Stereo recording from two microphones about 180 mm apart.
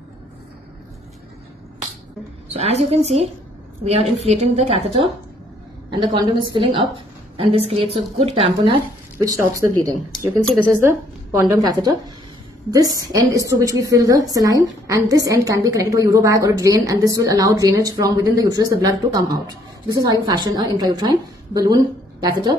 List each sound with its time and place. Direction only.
2.5 s a woman's voice: 35° right (ahead or behind)
9.2 s a woman's voice: 20° right (ahead or behind)
10.4 s a woman's voice: 5° right (ahead or behind)